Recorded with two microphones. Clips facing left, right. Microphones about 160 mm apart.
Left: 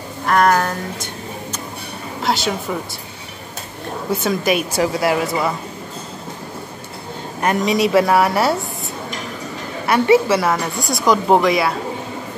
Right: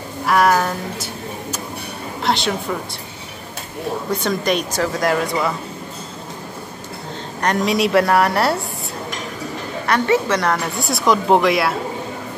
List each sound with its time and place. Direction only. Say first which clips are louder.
0.3 s a woman's voice: even; 5° right (ahead or behind)
4.1 s a woman's voice: left 3 dB; 5° left (ahead or behind)
7.3 s a woman's voice: left 1 dB; 5° left (ahead or behind)
9.8 s a woman's voice: left 4 dB; 10° left (ahead or behind)